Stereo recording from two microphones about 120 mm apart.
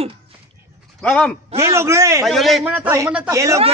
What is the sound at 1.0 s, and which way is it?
Speech, 10° left (ahead or behind).